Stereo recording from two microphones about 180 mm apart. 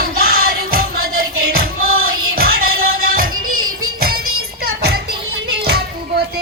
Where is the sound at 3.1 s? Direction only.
50° right (ahead or behind).